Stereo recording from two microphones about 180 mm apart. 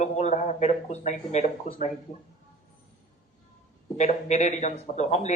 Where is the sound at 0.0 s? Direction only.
40° left (ahead or behind).